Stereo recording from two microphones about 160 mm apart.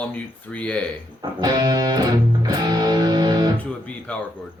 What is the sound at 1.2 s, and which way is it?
Music, 25° right (ahead or behind).